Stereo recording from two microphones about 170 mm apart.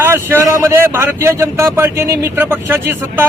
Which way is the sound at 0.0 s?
15° right (ahead or behind).